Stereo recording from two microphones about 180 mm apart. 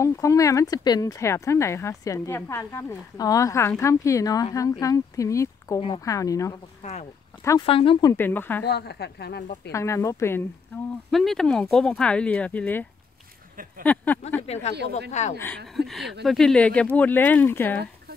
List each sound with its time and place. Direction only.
0.0 s speech: 15° left (ahead or behind)
6.8 s speech: 40° left (ahead or behind)
8.1 s speech: 10° left (ahead or behind)
8.6 s speech: 65° left (ahead or behind)
9.7 s speech: 15° left (ahead or behind)
11.1 s speech: centre (ahead or behind)
13.8 s speech: 10° left (ahead or behind)
14.4 s speech: 35° left (ahead or behind)
14.7 s speech: 65° right (ahead or behind)
15.0 s speech: 40° left (ahead or behind)
15.3 s speech: 10° left (ahead or behind)
15.9 s speech: centre (ahead or behind)